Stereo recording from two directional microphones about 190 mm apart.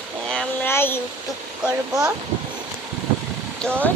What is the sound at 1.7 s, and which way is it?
Speech, 15° right (ahead or behind).